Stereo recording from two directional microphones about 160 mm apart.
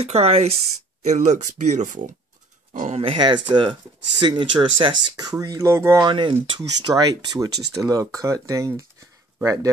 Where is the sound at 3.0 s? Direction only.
30° right (ahead or behind).